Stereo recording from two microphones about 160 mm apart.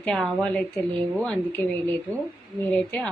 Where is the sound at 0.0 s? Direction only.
5° left (ahead or behind).